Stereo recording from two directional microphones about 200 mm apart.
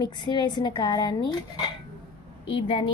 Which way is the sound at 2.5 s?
25° left (ahead or behind).